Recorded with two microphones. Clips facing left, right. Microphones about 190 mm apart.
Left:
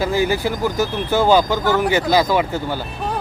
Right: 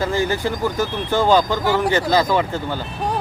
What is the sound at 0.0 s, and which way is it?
Speech, 10° left (ahead or behind).